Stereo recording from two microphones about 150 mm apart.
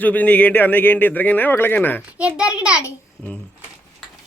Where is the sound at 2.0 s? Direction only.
5° right (ahead or behind).